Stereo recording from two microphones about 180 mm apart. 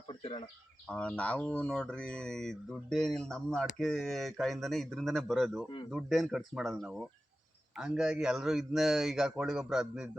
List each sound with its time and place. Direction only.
0.1 s bird: 30° left (ahead or behind)
0.9 s speech: 5° left (ahead or behind)